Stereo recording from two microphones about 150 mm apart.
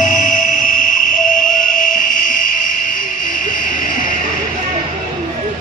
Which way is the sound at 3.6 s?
60° left (ahead or behind).